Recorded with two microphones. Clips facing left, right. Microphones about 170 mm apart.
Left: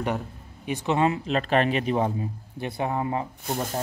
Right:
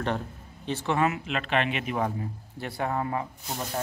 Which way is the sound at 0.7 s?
15° left (ahead or behind).